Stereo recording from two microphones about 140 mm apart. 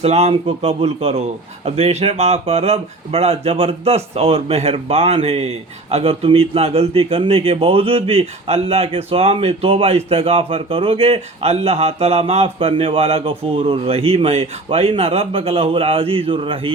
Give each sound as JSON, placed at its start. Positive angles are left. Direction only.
{"t": 0.0, "sound": "a man's voice", "side_deg": -50}